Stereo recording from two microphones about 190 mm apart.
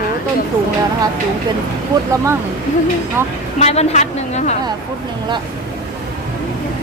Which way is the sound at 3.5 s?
35° left (ahead or behind).